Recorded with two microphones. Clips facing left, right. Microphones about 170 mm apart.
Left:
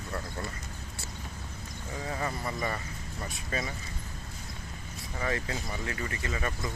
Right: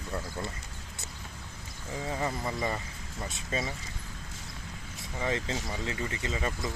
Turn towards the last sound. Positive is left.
turn(degrees=-20)  # may be behind; listen again after turning